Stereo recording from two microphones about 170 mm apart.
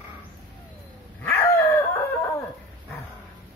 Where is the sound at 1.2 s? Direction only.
15° left (ahead or behind).